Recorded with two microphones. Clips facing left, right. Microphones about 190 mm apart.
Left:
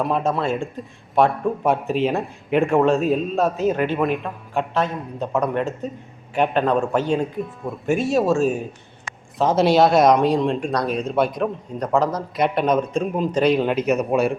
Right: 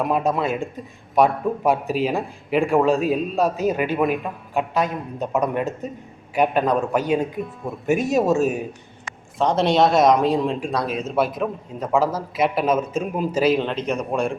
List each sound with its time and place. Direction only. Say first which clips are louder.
0.0 s a man's voice: even; 15° right (ahead or behind)
0.8 s a man's voice: right 1 dB; centre (ahead or behind); by 8.5 s 20° right (ahead or behind)
9.4 s speech: left 2 dB; centre (ahead or behind)
13.7 s speech: left 5 dB; 5° left (ahead or behind)